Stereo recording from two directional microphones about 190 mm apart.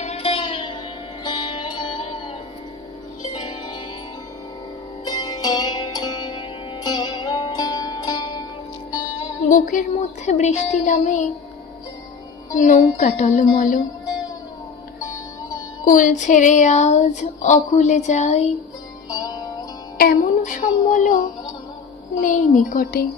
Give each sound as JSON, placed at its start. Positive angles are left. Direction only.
{"t": 0.0, "sound": "music", "side_deg": 35}
{"t": 5.0, "sound": "music", "side_deg": 20}
{"t": 9.5, "sound": "music", "side_deg": 40}
{"t": 12.5, "sound": "music", "side_deg": 40}
{"t": 15.8, "sound": "music", "side_deg": 45}
{"t": 19.0, "sound": "music", "side_deg": 20}
{"t": 20.0, "sound": "music", "side_deg": 45}
{"t": 22.2, "sound": "a woman's voice", "side_deg": 40}